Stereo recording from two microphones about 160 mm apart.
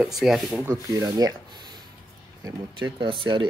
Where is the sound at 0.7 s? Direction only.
20° right (ahead or behind).